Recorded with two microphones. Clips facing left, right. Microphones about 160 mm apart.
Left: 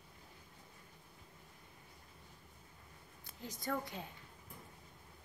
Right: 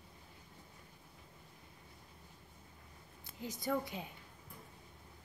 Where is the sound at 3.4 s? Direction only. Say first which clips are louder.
Right 3 dB; 15° right (ahead or behind).